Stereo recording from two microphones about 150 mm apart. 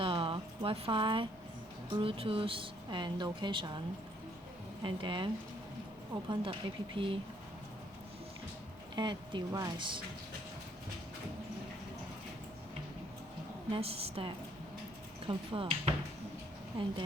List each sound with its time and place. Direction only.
0.0 s a sound: 35° right (ahead or behind)
2.0 s speech: 35° right (ahead or behind)
4.8 s speech: 35° right (ahead or behind)
9.0 s speech: 30° right (ahead or behind)
13.7 s speech: 40° right (ahead or behind)